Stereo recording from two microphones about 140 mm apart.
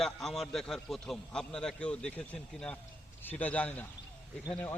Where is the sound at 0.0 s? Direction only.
Centre (ahead or behind).